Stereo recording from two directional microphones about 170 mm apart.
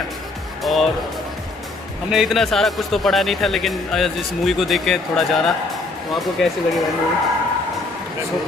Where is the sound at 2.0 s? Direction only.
Centre (ahead or behind).